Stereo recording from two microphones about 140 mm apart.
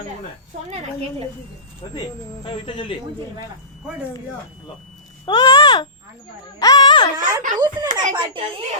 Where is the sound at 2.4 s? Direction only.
35° left (ahead or behind).